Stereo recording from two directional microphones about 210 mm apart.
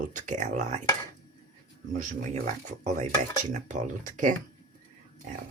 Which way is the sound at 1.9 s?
35° right (ahead or behind).